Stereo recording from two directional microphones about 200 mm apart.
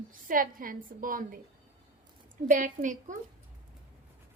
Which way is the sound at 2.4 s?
40° right (ahead or behind).